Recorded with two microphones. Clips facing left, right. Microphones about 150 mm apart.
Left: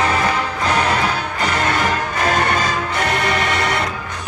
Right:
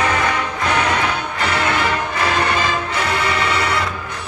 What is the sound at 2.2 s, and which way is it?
Music, 45° left (ahead or behind).